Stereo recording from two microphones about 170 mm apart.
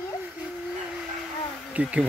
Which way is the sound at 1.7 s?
10° right (ahead or behind).